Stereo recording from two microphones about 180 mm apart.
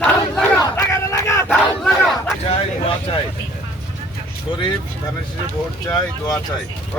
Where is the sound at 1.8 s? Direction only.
Centre (ahead or behind).